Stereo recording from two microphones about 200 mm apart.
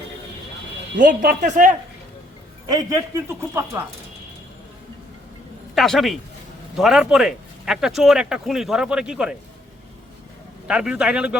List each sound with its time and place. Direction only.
0.9 s speech: 45° right (ahead or behind)
2.6 s speech: 15° right (ahead or behind)
5.7 s speech: centre (ahead or behind)
10.7 s speech: 5° right (ahead or behind)